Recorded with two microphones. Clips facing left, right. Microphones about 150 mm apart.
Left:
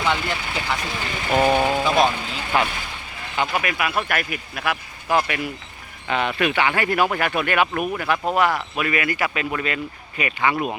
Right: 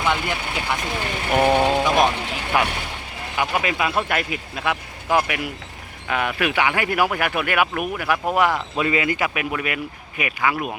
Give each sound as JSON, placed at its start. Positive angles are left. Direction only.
{"t": 0.0, "sound": "speech", "side_deg": -10}
{"t": 1.8, "sound": "speech", "side_deg": 0}
{"t": 2.3, "sound": "speech", "side_deg": -10}